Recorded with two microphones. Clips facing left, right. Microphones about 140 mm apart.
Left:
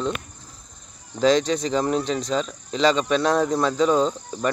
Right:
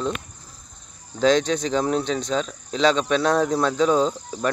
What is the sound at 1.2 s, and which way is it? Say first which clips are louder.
Speech: even; centre (ahead or behind).